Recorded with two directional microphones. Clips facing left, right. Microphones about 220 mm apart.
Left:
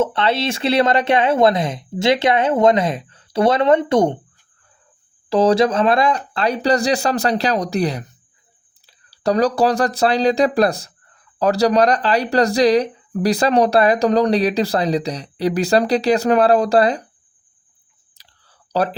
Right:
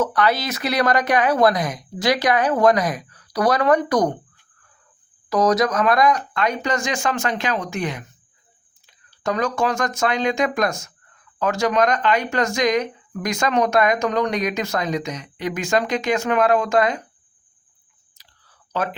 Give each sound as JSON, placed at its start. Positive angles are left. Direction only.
{"t": 0.0, "sound": "speech", "side_deg": 25}
{"t": 5.3, "sound": "speech", "side_deg": 30}
{"t": 18.2, "sound": "a sound", "side_deg": 35}